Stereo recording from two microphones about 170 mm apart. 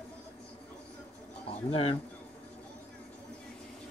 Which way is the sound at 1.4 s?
35° left (ahead or behind).